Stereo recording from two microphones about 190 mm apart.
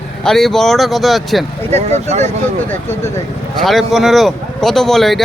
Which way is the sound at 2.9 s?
15° left (ahead or behind).